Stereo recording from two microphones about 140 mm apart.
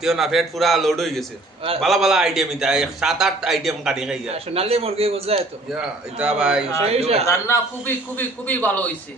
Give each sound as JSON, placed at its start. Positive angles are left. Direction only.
{"t": 0.0, "sound": "a man's voice", "side_deg": 0}
{"t": 4.3, "sound": "a man's voice", "side_deg": -45}
{"t": 5.7, "sound": "a man's voice", "side_deg": -5}
{"t": 6.9, "sound": "a man's voice", "side_deg": -45}
{"t": 7.3, "sound": "a man's voice", "side_deg": 20}